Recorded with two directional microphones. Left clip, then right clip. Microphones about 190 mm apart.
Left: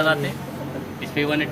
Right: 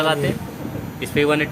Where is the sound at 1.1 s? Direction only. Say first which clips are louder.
Right 5 dB; 65° right (ahead or behind).